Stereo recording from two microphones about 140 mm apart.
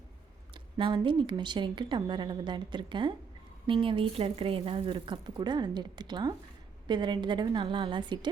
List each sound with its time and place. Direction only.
0.5 s speech: 35° right (ahead or behind)